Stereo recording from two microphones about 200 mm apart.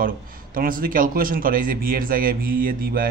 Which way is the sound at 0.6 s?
45° right (ahead or behind).